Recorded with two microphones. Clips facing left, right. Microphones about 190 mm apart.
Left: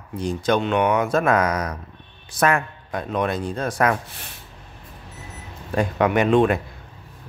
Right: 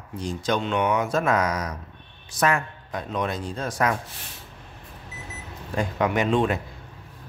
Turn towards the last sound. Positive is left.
turn(degrees=60)  # may be behind; listen again after turning